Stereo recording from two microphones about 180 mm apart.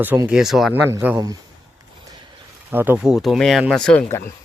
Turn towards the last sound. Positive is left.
turn(degrees=5)  # may be behind; listen again after turning